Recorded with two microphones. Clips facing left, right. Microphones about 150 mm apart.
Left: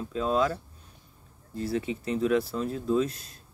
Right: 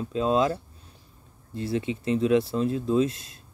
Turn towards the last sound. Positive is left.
turn(degrees=-20)  # may be behind; listen again after turning